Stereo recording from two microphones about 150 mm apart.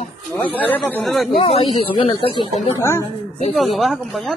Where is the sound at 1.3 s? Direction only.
40° left (ahead or behind).